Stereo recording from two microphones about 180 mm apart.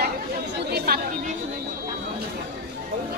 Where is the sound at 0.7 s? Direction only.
55° right (ahead or behind).